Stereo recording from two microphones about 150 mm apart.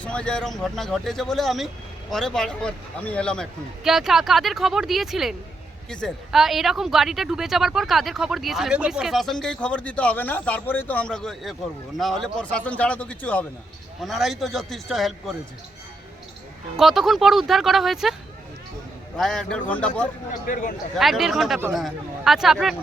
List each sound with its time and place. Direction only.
0.0 s speech: 5° left (ahead or behind)
16.7 s speech: centre (ahead or behind)
19.1 s speech: 5° left (ahead or behind)
20.5 s speech: 65° left (ahead or behind)
20.9 s speech: centre (ahead or behind)